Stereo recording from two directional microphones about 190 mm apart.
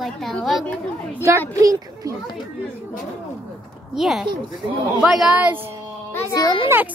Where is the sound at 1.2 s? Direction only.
15° right (ahead or behind).